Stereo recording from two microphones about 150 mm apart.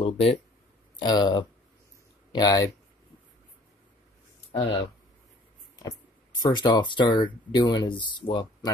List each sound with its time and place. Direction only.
0.0 s speech: 40° left (ahead or behind)
0.9 s speech: 30° left (ahead or behind)
4.5 s speech: 35° left (ahead or behind)
5.8 s speech: 25° left (ahead or behind)